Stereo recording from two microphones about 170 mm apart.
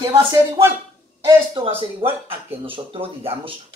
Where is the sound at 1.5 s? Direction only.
30° right (ahead or behind).